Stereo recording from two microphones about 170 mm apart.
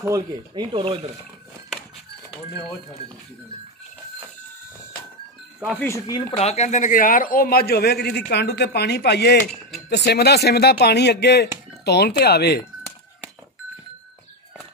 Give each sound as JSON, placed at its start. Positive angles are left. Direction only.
{"t": 0.0, "sound": "speech", "side_deg": -20}
{"t": 0.7, "sound": "speech", "side_deg": -30}
{"t": 6.0, "sound": "speech", "side_deg": 25}
{"t": 6.4, "sound": "a man's voice", "side_deg": 40}